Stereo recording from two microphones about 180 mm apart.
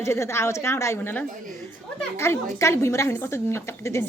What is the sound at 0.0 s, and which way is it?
Speech, 15° left (ahead or behind).